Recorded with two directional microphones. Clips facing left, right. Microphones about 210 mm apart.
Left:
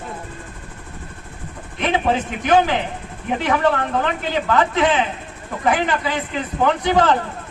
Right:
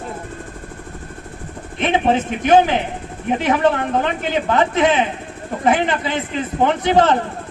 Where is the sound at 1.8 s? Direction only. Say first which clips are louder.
Right 3 dB; 25° right (ahead or behind).